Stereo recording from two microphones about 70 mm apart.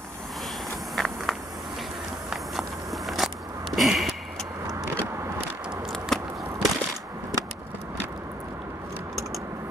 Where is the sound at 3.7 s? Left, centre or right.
Centre.